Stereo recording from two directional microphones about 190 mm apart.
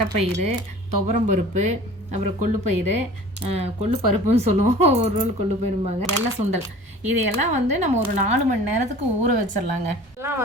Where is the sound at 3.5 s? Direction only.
35° right (ahead or behind).